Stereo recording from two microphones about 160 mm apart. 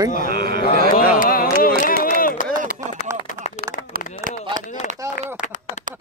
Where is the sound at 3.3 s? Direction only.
45° left (ahead or behind).